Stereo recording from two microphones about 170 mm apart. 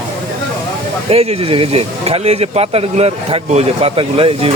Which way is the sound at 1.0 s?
35° right (ahead or behind).